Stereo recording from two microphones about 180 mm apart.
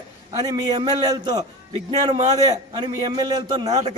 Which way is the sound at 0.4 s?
25° right (ahead or behind).